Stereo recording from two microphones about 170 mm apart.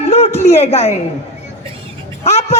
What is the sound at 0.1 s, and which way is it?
Speech, 40° left (ahead or behind).